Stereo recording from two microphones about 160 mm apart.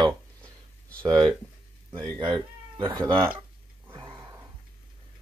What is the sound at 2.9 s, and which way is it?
Speech, 20° right (ahead or behind).